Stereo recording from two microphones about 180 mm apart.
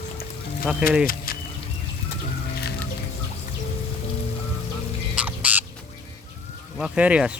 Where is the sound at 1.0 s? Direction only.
55° left (ahead or behind).